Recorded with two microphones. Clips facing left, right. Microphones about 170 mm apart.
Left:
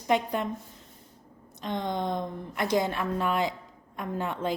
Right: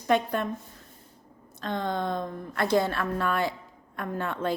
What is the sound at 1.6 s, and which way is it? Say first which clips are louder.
A woman's voice: right 1 dB; 15° left (ahead or behind).